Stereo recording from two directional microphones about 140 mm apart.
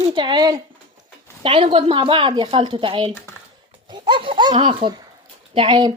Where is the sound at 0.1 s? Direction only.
35° right (ahead or behind).